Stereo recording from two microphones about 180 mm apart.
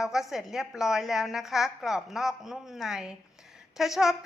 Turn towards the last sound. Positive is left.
turn(degrees=0)  # may be behind; listen again after turning